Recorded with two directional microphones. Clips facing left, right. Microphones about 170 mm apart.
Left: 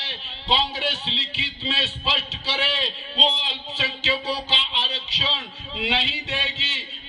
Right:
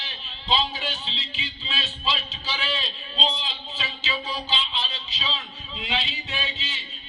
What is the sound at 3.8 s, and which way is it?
Music, 85° left.